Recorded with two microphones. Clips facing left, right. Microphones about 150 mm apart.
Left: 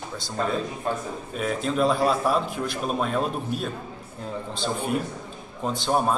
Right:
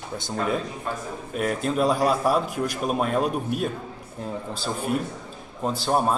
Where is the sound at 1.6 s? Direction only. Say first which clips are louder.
Even; 10° right (ahead or behind).